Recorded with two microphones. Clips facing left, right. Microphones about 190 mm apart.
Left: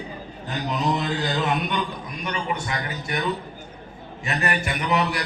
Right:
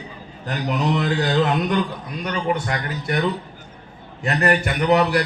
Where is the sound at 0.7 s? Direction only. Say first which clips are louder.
Right 3 dB; 65° right (ahead or behind).